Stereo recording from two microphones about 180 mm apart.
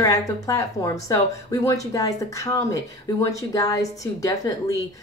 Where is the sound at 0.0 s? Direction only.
20° left (ahead or behind).